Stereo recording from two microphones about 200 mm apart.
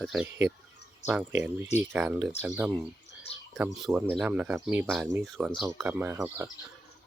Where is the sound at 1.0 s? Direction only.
35° left (ahead or behind).